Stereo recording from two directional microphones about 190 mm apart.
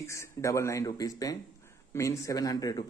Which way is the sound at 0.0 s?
15° left (ahead or behind).